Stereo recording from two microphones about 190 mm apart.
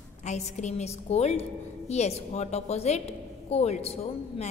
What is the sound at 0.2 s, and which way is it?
A woman's voice, 35° left (ahead or behind).